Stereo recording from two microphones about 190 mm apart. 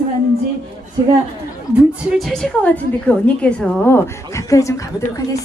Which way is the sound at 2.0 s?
Centre (ahead or behind).